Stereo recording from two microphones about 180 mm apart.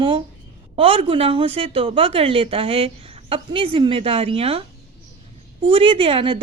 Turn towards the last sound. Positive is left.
turn(degrees=-30)  # may be behind; listen again after turning